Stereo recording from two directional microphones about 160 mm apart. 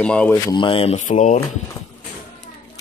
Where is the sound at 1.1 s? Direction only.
50° left (ahead or behind).